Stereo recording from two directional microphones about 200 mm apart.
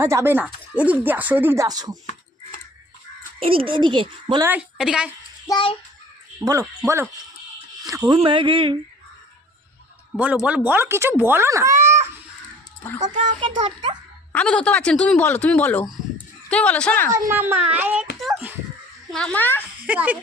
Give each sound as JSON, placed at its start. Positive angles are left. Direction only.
{"t": 0.0, "sound": "speech", "side_deg": -15}
{"t": 3.4, "sound": "speech", "side_deg": -25}
{"t": 4.4, "sound": "speech", "side_deg": -5}
{"t": 5.5, "sound": "a child's voice", "side_deg": 25}
{"t": 6.4, "sound": "speech", "side_deg": -15}
{"t": 10.4, "sound": "speech", "side_deg": -10}
{"t": 12.8, "sound": "speech", "side_deg": 10}
{"t": 13.6, "sound": "speech", "side_deg": -25}
{"t": 14.3, "sound": "speech", "side_deg": 5}
{"t": 17.1, "sound": "speech", "side_deg": -15}
{"t": 19.1, "sound": "speech", "side_deg": 5}
{"t": 19.8, "sound": "speech", "side_deg": -5}